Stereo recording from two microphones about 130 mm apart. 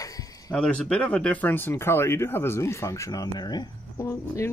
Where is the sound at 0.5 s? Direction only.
5° left (ahead or behind).